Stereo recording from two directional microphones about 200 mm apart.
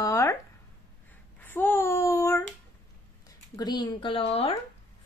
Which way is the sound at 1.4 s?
10° left (ahead or behind).